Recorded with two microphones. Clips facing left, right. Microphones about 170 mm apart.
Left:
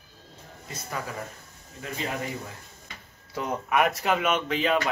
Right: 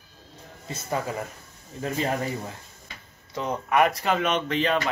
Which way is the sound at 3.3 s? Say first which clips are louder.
Right 3 dB; 5° left (ahead or behind).